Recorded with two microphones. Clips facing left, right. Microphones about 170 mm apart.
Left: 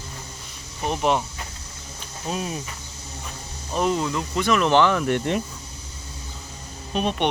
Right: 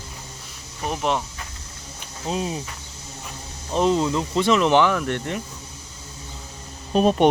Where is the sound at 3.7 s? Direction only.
25° right (ahead or behind).